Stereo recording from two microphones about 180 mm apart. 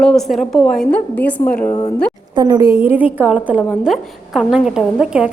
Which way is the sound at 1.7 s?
20° left (ahead or behind).